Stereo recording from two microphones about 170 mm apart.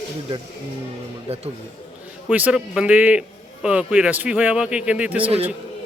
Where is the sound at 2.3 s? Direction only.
5° right (ahead or behind).